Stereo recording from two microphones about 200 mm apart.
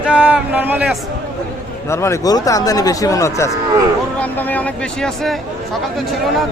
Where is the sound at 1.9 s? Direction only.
15° left (ahead or behind).